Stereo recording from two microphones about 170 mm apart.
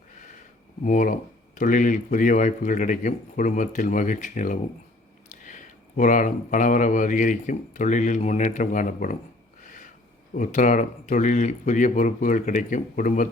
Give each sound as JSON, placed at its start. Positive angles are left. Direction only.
{"t": 0.9, "sound": "speech", "side_deg": 50}
{"t": 10.3, "sound": "speech", "side_deg": 50}